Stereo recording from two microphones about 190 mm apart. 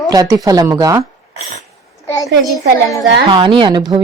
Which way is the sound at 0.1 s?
20° right (ahead or behind).